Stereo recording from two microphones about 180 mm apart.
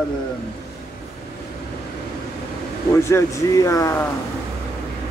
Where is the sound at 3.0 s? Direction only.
15° left (ahead or behind).